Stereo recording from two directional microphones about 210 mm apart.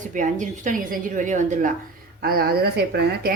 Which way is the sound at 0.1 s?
35° right (ahead or behind).